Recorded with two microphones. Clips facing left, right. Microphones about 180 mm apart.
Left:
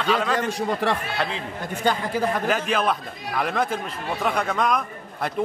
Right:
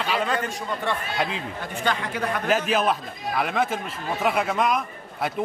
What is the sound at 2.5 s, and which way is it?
Speech, 5° right (ahead or behind).